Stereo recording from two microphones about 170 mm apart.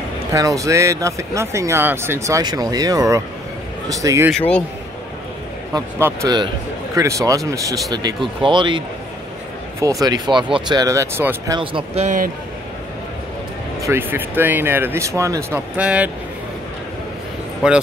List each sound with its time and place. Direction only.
0.3 s speech: 20° right (ahead or behind)
4.3 s speech: 5° left (ahead or behind)
5.7 s speech: 15° right (ahead or behind)
11.5 s speech: 30° right (ahead or behind)
13.7 s speech: 15° right (ahead or behind)
15.8 s speech: 5° right (ahead or behind)
17.6 s speech: 5° right (ahead or behind)